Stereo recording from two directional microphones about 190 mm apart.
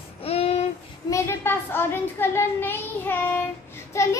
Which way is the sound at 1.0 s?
15° left (ahead or behind).